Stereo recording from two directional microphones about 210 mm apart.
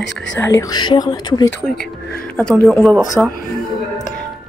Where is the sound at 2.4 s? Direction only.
5° left (ahead or behind).